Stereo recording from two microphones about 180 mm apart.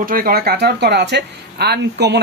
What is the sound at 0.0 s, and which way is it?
Speech, 50° right (ahead or behind).